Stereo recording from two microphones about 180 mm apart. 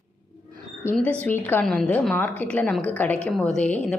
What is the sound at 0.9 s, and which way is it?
A woman's voice, 5° left (ahead or behind).